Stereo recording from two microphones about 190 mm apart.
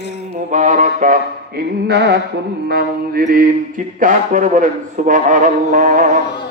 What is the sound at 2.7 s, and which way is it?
A man's voice, 55° right (ahead or behind).